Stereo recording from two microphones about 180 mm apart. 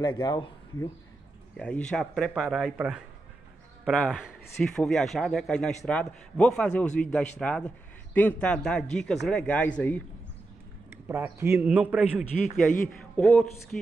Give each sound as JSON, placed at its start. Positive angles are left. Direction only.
{"t": 0.0, "sound": "a man's voice", "side_deg": 25}
{"t": 1.6, "sound": "a man's voice", "side_deg": 5}
{"t": 10.9, "sound": "a man's voice", "side_deg": -15}
{"t": 12.5, "sound": "a man's voice", "side_deg": 10}